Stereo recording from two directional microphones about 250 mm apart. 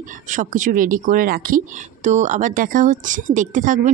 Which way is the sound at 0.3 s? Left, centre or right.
Right.